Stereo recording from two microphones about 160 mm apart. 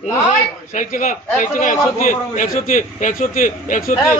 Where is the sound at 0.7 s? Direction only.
50° left (ahead or behind).